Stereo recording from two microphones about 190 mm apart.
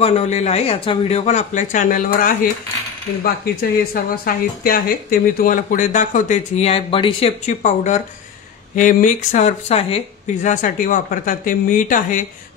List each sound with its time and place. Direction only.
0.0 s speech: 35° left (ahead or behind)
3.6 s speech: 50° left (ahead or behind)